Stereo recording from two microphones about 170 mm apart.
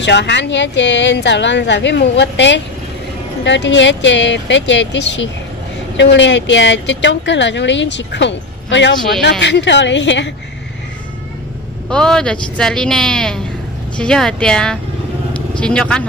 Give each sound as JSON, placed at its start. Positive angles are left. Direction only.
{"t": 0.0, "sound": "a woman's voice", "side_deg": 90}
{"t": 11.9, "sound": "speech", "side_deg": 5}